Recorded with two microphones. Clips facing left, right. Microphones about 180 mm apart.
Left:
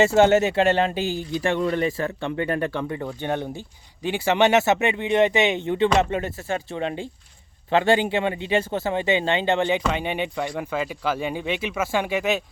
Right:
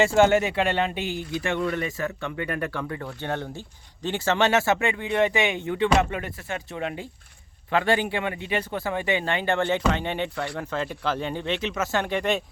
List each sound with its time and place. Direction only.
0.0 s speech: 25° left (ahead or behind); by 12.4 s 5° left (ahead or behind)